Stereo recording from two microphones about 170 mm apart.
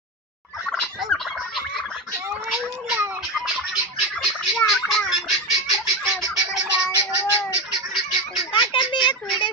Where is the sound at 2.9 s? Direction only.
10° right (ahead or behind).